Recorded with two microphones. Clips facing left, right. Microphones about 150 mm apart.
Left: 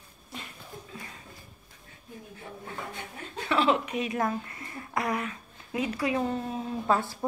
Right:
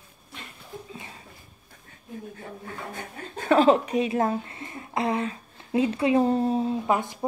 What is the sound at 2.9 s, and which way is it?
A woman's voice, 45° right (ahead or behind).